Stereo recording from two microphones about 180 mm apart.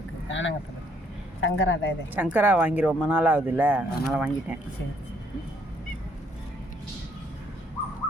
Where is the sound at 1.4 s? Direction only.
90° left.